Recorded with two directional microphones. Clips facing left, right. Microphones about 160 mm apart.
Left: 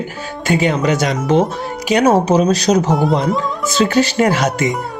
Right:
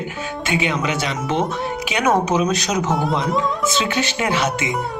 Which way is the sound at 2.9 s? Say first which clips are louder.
Left 5 dB; centre (ahead or behind).